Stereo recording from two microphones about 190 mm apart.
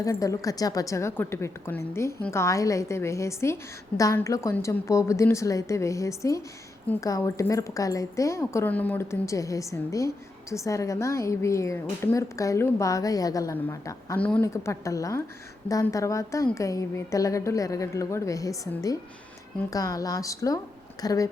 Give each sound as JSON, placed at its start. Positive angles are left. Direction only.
{"t": 0.0, "sound": "a woman's voice", "side_deg": 15}